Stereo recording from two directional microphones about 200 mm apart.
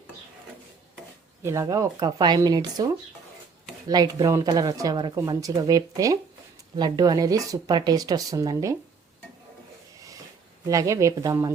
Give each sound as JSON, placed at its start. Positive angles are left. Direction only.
{"t": 1.4, "sound": "speech", "side_deg": -15}
{"t": 10.7, "sound": "speech", "side_deg": -15}